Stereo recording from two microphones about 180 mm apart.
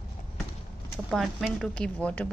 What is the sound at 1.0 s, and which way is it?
Speech, centre (ahead or behind).